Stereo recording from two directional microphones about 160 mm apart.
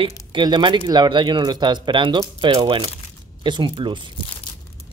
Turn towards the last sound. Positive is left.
turn(degrees=-30)  # may be behind; listen again after turning